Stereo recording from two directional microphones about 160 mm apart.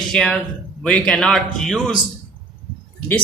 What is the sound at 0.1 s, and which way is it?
A man's voice, 5° left (ahead or behind).